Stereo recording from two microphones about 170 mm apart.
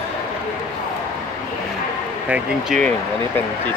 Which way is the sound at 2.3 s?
5° right (ahead or behind).